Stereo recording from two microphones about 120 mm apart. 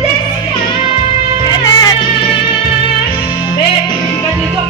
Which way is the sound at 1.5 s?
35° left (ahead or behind).